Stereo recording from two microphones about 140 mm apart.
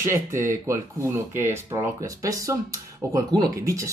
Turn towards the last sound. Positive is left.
turn(degrees=-20)  # may be behind; listen again after turning